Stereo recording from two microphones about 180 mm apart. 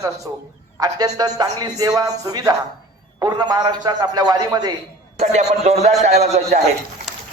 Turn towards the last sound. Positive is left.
turn(degrees=-35)  # may be behind; listen again after turning